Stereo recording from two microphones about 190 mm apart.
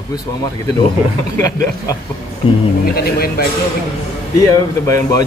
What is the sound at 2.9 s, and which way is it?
Speech, 55° left (ahead or behind).